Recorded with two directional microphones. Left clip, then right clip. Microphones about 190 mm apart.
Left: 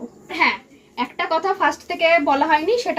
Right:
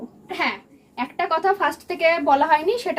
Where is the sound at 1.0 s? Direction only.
15° right (ahead or behind).